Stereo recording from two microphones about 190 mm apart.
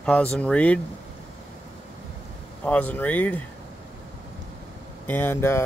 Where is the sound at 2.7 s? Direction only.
10° left (ahead or behind).